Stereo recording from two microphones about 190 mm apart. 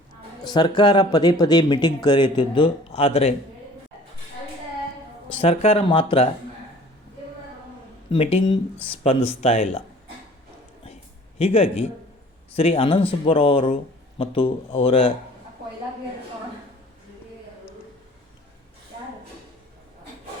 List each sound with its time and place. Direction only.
0.4 s speech: 25° left (ahead or behind)
5.4 s speech: 30° left (ahead or behind)
8.1 s speech: 30° left (ahead or behind)
11.3 s speech: 35° left (ahead or behind)